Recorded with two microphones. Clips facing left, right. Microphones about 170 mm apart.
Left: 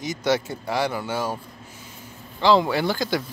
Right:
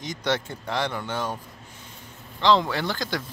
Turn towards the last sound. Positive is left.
turn(degrees=5)  # may be behind; listen again after turning